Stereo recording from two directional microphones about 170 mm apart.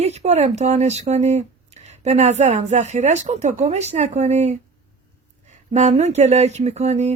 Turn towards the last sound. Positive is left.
turn(degrees=-40)  # may be behind; listen again after turning